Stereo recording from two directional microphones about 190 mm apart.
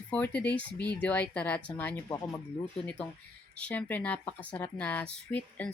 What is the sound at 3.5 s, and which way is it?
Speech, 5° left (ahead or behind).